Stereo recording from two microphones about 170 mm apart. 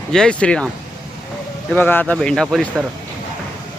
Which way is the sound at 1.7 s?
10° left (ahead or behind).